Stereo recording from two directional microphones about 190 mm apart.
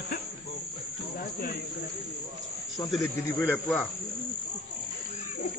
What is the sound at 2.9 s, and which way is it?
Speech, centre (ahead or behind).